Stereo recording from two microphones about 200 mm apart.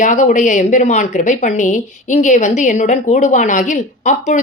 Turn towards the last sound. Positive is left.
turn(degrees=40)  # may be behind; listen again after turning